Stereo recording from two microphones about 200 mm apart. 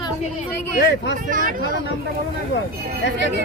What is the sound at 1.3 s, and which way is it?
Speech, 45° right (ahead or behind).